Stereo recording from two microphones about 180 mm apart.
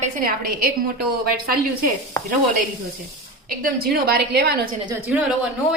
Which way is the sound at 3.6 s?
60° right (ahead or behind).